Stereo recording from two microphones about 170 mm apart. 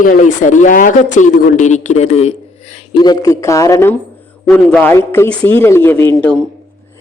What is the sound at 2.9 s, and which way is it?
Speech, 25° left (ahead or behind).